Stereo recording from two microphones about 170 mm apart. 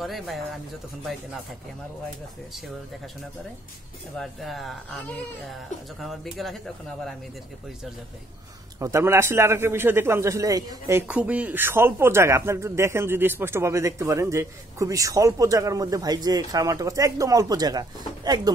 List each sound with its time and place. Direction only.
0.0 s speech: centre (ahead or behind)
4.2 s speech: centre (ahead or behind)
8.7 s a man's voice: 15° right (ahead or behind)